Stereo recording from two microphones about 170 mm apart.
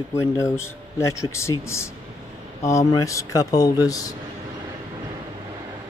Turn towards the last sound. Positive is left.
turn(degrees=20)  # may be behind; listen again after turning